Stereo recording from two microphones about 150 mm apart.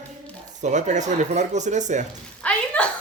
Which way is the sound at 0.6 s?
50° right (ahead or behind).